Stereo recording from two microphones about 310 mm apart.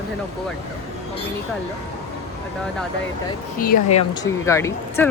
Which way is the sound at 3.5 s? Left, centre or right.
Left.